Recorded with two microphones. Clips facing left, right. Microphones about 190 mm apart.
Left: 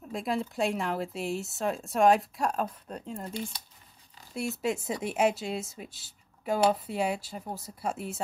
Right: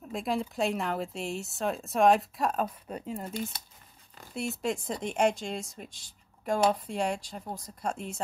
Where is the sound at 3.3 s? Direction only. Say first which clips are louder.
Right 1 dB; 45° right (ahead or behind).